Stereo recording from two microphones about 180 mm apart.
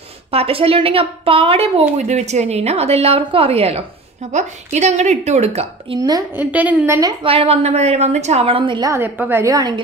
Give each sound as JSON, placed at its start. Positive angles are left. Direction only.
{"t": 0.3, "sound": "a woman's voice", "side_deg": -30}
{"t": 5.9, "sound": "a woman's voice", "side_deg": -20}
{"t": 6.4, "sound": "a woman's voice", "side_deg": -10}
{"t": 7.0, "sound": "a woman's voice", "side_deg": -25}